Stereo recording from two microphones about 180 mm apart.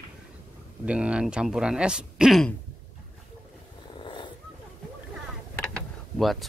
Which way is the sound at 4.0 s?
25° left (ahead or behind).